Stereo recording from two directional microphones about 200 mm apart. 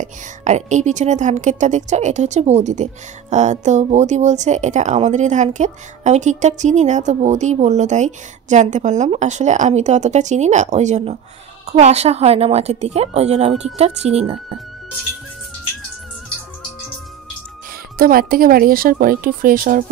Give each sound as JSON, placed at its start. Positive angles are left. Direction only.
{"t": 0.0, "sound": "a woman's voice", "side_deg": -35}
{"t": 17.9, "sound": "speech", "side_deg": -45}